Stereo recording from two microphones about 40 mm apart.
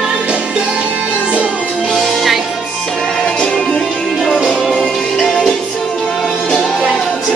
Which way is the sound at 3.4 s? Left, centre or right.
Centre.